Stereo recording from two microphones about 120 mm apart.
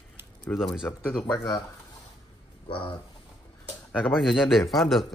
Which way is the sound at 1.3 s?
35° left (ahead or behind).